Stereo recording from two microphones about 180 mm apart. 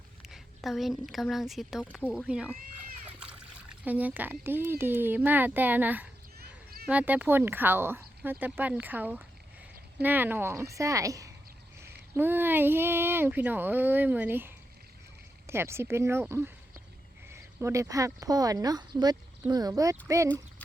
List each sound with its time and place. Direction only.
0.2 s a woman's voice: centre (ahead or behind)
2.1 s speech: 5° right (ahead or behind)
6.4 s a sound: 55° right (ahead or behind)
6.8 s speech: 10° right (ahead or behind)